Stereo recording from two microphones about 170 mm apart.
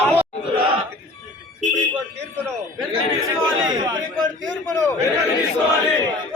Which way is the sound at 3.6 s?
25° right (ahead or behind).